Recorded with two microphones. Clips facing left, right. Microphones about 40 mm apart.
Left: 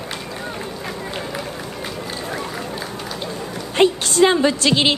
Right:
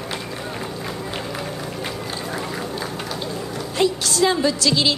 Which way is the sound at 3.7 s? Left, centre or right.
Left.